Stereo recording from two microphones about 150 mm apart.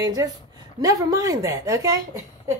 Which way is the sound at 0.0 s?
25° right (ahead or behind).